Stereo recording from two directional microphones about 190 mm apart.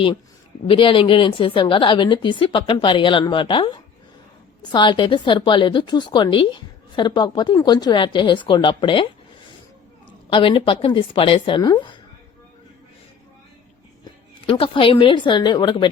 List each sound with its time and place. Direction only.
0.7 s a woman's voice: 25° left (ahead or behind)
10.1 s a woman's voice: 25° left (ahead or behind)
14.4 s a woman's voice: 30° left (ahead or behind)